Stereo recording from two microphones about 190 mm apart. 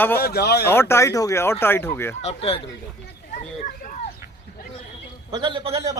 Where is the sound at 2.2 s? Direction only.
30° left (ahead or behind).